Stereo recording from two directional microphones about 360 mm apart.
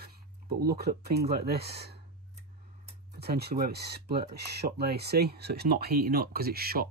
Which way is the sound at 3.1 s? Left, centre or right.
Right.